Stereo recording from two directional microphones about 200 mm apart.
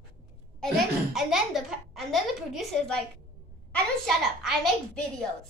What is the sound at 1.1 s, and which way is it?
A child's voice, centre (ahead or behind).